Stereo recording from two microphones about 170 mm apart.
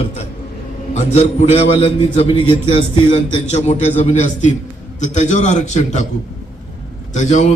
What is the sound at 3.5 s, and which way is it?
A man's voice, 45° left (ahead or behind).